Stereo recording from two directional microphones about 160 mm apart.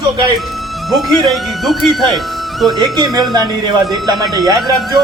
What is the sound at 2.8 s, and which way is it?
Speech, 25° right (ahead or behind).